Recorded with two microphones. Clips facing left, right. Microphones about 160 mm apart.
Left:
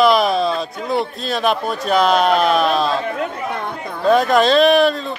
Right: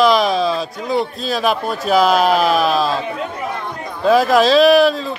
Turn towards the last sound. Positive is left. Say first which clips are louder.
# right 2 dB
turn(degrees=0)  # may be behind; listen again after turning